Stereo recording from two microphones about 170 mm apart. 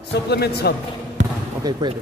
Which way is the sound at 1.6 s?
20° right (ahead or behind).